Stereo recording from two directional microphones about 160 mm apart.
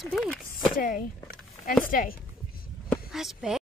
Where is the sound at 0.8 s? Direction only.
60° left (ahead or behind).